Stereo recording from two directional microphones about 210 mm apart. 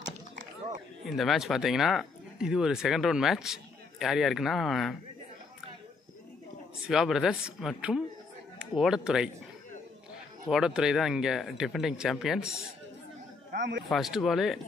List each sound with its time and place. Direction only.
1.0 s speech: centre (ahead or behind)
6.9 s speech: centre (ahead or behind)
10.5 s speech: 5° right (ahead or behind)
13.5 s speech: 60° right (ahead or behind)
13.8 s speech: centre (ahead or behind)